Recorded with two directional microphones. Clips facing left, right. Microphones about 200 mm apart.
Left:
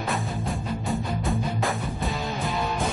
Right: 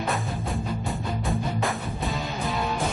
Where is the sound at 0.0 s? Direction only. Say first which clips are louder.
Even; centre (ahead or behind).